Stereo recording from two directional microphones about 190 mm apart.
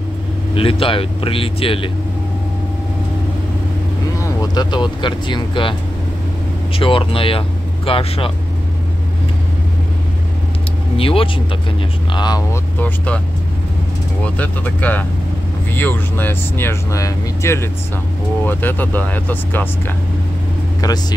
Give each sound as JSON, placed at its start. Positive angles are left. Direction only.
{"t": 0.6, "sound": "speech", "side_deg": 30}
{"t": 4.2, "sound": "speech", "side_deg": 20}
{"t": 6.8, "sound": "speech", "side_deg": 30}
{"t": 11.0, "sound": "speech", "side_deg": 30}
{"t": 12.8, "sound": "speech", "side_deg": 5}
{"t": 14.2, "sound": "speech", "side_deg": 10}